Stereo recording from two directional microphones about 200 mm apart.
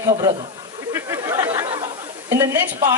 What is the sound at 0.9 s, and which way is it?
Chatter, 15° right (ahead or behind).